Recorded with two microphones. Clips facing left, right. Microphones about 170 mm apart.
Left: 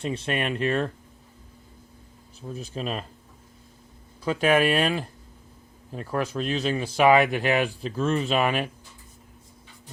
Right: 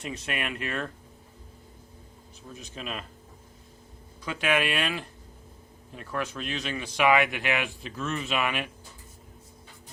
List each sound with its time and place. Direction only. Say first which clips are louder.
0.0 s speech: left 6 dB; 30° left (ahead or behind)
2.5 s speech: left 7 dB; 35° left (ahead or behind)
4.2 s speech: left 6 dB; 35° left (ahead or behind)